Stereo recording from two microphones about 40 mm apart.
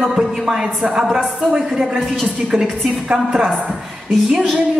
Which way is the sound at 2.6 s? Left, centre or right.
Centre.